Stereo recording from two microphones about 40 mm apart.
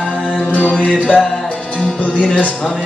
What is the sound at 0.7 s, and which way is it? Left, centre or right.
Music, left.